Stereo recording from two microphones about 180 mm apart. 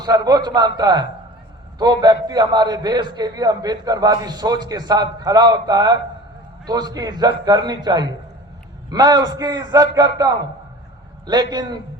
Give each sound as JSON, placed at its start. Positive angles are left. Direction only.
{"t": 0.0, "sound": "a man's voice", "side_deg": -20}